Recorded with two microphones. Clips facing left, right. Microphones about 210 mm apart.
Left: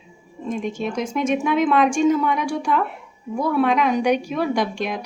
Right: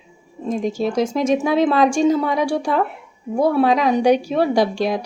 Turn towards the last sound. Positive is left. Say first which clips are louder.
# right 5 dB
turn(degrees=-35)  # may be behind; listen again after turning